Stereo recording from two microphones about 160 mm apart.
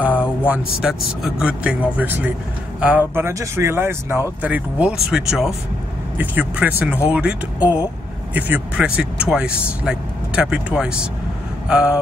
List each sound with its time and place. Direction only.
0.5 s speech: 5° right (ahead or behind)